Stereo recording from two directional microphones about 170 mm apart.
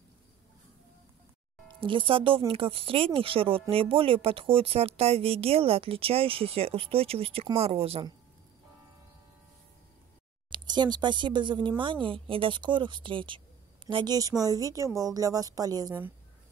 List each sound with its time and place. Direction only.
1.8 s speech: 30° right (ahead or behind)
10.5 s speech: 25° right (ahead or behind)